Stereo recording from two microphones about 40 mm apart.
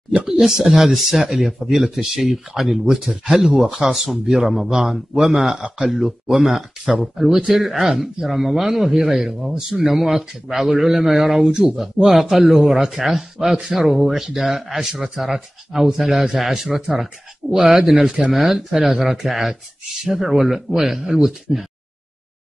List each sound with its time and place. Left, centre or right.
0.4 s speech: centre
18.0 s speech: right
18.3 s speech: centre